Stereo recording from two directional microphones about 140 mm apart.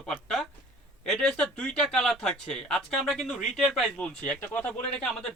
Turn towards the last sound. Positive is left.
turn(degrees=10)  # may be behind; listen again after turning